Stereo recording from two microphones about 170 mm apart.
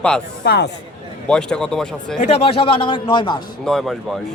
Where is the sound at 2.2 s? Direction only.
35° left (ahead or behind).